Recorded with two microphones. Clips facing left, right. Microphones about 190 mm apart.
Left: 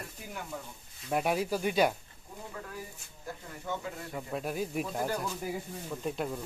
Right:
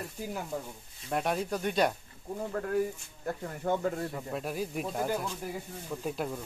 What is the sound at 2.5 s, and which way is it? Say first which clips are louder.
Speech: right 15 dB; 60° right (ahead or behind).